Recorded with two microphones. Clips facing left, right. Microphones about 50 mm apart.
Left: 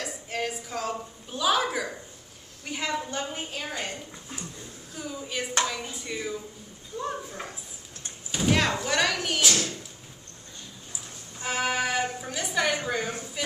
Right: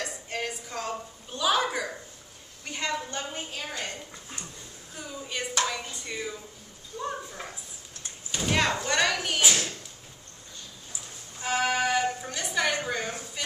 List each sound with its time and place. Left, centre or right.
0.0 s a sound: centre
2.6 s a woman's voice: centre
4.9 s a woman's voice: centre
9.4 s speech: centre
11.4 s speech: centre